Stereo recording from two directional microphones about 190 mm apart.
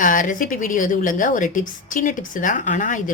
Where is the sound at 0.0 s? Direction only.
45° left (ahead or behind).